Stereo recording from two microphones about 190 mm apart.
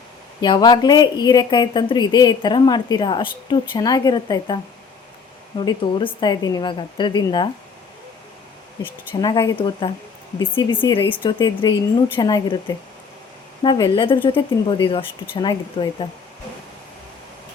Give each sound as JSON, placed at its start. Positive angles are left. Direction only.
{"t": 0.4, "sound": "a woman's voice", "side_deg": 25}
{"t": 9.2, "sound": "a woman's voice", "side_deg": 20}